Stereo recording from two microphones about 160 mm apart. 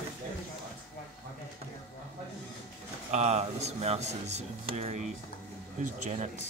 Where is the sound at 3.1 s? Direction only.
45° right (ahead or behind).